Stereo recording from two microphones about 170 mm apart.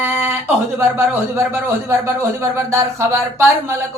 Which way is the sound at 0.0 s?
15° right (ahead or behind).